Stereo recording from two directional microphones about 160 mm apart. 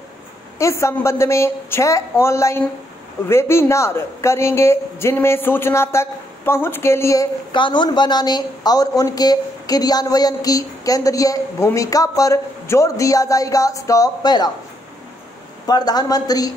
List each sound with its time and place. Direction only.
0.6 s a man's voice: 20° left (ahead or behind)
7.5 s speech: 30° left (ahead or behind)
15.6 s speech: 25° left (ahead or behind)